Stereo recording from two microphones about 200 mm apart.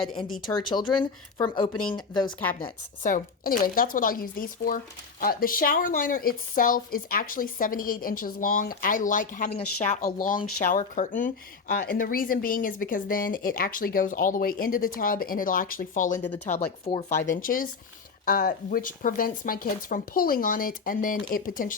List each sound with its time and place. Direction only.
0.5 s speech: 20° left (ahead or behind)
3.0 s a woman's voice: 40° left (ahead or behind)
16.5 s a woman's voice: 30° left (ahead or behind)